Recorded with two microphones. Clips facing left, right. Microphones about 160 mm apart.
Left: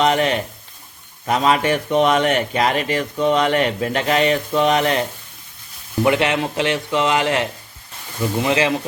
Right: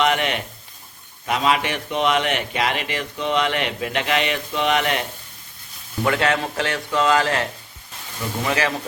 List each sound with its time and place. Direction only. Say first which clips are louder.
0.0 s a man's voice: left 4 dB; 35° left (ahead or behind)
6.0 s speech: left 3 dB; 20° left (ahead or behind)